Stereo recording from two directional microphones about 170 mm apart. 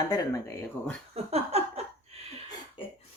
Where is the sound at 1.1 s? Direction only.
40° right (ahead or behind).